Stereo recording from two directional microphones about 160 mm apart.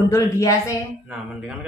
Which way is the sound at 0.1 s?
20° left (ahead or behind).